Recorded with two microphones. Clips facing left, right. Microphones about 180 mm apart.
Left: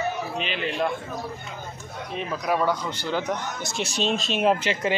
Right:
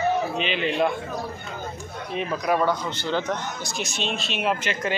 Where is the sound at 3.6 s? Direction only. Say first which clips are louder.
Left 3 dB; 35° left (ahead or behind).